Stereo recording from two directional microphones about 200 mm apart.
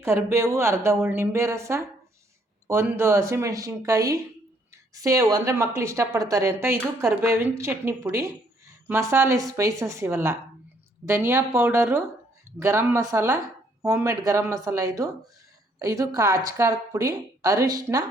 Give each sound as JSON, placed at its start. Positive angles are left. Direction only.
{"t": 0.0, "sound": "a woman's voice", "side_deg": -15}